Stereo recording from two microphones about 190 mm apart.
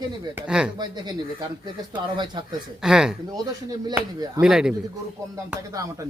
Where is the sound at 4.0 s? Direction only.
20° right (ahead or behind).